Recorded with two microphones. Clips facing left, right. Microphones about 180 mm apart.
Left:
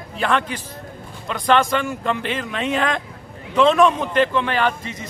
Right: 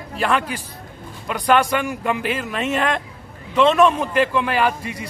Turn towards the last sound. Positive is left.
turn(degrees=-10)  # may be behind; listen again after turning